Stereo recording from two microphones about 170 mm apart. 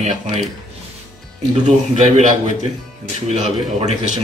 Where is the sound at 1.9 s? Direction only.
40° right (ahead or behind).